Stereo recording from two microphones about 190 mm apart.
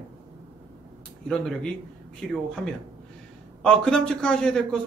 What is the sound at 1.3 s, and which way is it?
A man's voice, 5° left (ahead or behind).